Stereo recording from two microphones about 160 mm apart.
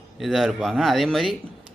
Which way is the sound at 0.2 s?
Centre (ahead or behind).